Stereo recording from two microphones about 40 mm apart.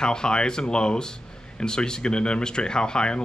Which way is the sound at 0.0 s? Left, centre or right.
Centre.